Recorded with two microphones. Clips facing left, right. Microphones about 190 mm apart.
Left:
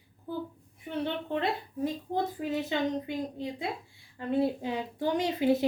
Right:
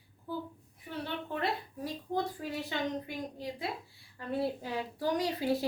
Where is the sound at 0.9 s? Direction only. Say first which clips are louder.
Left 6 dB; 20° left (ahead or behind).